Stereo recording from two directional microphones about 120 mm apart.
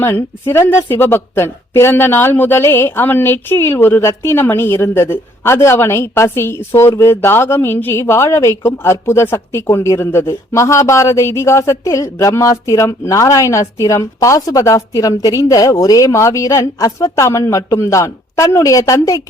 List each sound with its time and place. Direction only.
0.0 s speech: 20° left (ahead or behind)